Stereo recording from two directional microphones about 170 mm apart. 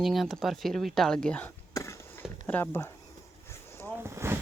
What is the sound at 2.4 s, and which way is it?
Speech, 10° left (ahead or behind).